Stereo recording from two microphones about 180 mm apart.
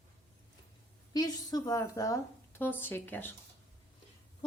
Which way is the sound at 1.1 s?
20° left (ahead or behind).